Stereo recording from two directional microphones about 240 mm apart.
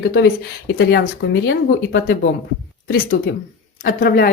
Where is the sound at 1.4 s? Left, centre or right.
Left.